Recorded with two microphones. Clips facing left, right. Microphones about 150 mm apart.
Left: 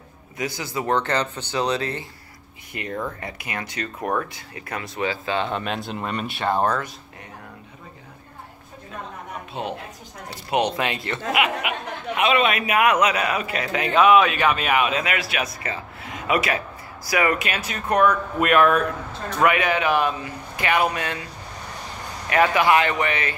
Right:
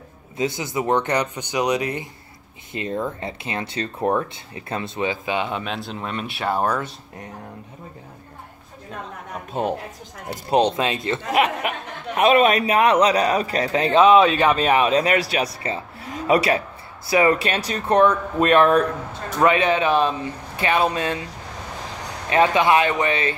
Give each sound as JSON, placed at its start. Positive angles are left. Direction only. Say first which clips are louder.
{"t": 0.4, "sound": "speech", "louder": "right 4 dB", "side_deg": -20}
{"t": 5.6, "sound": "speech", "louder": "left 1 dB", "side_deg": 0}
{"t": 9.5, "sound": "a woman's voice", "louder": "right 6 dB", "side_deg": -45}
{"t": 10.6, "sound": "speech", "louder": "right 2 dB", "side_deg": -20}
{"t": 11.3, "sound": "speech", "louder": "right 3 dB", "side_deg": -40}
{"t": 22.3, "sound": "speech", "louder": "right 1 dB", "side_deg": -25}